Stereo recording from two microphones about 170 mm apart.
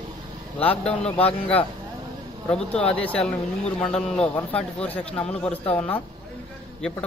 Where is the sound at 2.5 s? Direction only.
5° left (ahead or behind).